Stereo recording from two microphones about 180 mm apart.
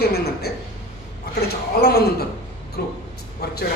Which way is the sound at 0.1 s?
60° left (ahead or behind).